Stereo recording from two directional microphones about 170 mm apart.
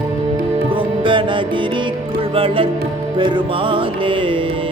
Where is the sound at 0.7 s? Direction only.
30° right (ahead or behind).